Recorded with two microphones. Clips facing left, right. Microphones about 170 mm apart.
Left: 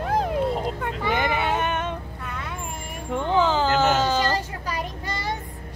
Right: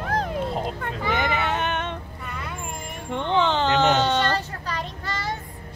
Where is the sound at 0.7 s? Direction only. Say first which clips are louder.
Left 1 dB; 5° left (ahead or behind).